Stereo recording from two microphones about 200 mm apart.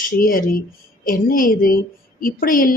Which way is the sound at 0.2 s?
45° left (ahead or behind).